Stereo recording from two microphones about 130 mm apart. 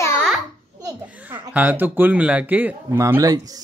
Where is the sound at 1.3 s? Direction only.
15° right (ahead or behind).